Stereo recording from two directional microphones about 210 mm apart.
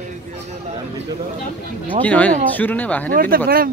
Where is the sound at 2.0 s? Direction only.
5° left (ahead or behind).